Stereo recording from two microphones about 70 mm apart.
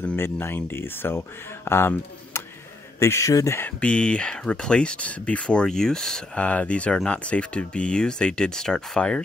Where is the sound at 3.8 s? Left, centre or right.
Centre.